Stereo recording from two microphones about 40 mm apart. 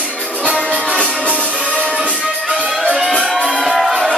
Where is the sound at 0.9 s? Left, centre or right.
Right.